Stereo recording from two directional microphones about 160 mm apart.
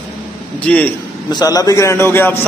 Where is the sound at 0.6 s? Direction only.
10° left (ahead or behind).